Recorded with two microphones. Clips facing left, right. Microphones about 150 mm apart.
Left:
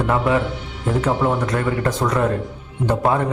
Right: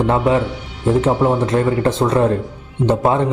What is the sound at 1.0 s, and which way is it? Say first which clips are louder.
A man's voice: right 4 dB; 25° right (ahead or behind).